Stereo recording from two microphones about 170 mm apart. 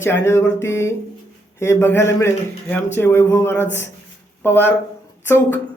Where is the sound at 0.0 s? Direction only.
15° left (ahead or behind).